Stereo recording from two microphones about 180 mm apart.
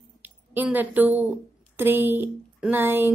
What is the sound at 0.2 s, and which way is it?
A woman's voice, 10° right (ahead or behind).